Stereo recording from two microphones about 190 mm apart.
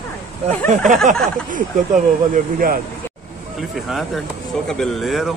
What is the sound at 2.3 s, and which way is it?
Speech, 50° right (ahead or behind).